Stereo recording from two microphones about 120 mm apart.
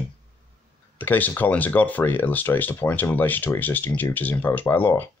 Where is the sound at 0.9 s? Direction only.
15° left (ahead or behind).